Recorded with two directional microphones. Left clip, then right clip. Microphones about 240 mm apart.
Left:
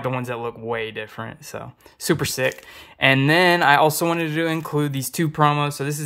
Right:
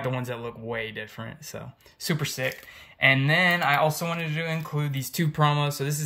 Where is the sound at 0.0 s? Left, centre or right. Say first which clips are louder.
Left 5 dB; centre.